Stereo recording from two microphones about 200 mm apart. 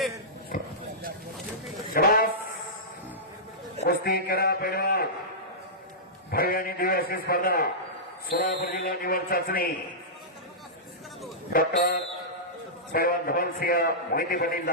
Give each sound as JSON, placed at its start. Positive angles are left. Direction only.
{"t": 0.5, "sound": "speech", "side_deg": 45}
{"t": 1.9, "sound": "a sound", "side_deg": 50}
{"t": 3.8, "sound": "a man's voice", "side_deg": 50}
{"t": 6.3, "sound": "a man's voice", "side_deg": 50}
{"t": 11.5, "sound": "a man's voice", "side_deg": 45}